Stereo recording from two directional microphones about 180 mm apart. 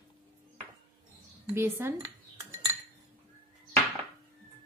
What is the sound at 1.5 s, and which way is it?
Speech, 15° right (ahead or behind).